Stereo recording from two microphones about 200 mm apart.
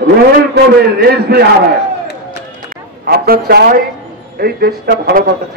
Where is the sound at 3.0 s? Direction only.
50° right (ahead or behind).